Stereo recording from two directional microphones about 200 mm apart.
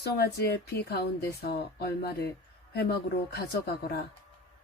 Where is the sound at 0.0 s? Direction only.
55° left (ahead or behind).